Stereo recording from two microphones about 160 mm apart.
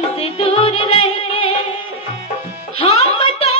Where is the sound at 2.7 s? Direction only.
40° left (ahead or behind).